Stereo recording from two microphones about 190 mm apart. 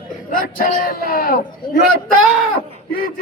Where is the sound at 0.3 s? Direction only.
50° left (ahead or behind).